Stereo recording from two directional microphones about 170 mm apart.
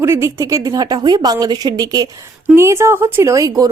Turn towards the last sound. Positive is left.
turn(degrees=-20)  # may be behind; listen again after turning